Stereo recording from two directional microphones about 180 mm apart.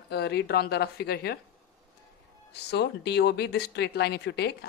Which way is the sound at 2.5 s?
65° left (ahead or behind).